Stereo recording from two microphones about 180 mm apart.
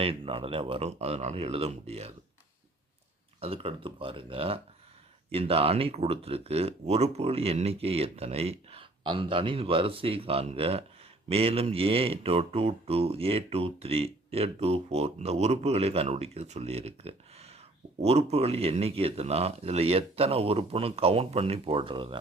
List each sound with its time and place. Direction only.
0.0 s speech: 30° right (ahead or behind)
3.4 s speech: 30° right (ahead or behind)